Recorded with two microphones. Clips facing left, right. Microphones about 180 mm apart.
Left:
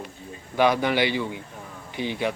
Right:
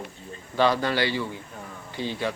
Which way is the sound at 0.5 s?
15° left (ahead or behind).